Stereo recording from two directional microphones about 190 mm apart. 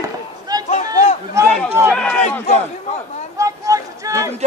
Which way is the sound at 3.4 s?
15° right (ahead or behind).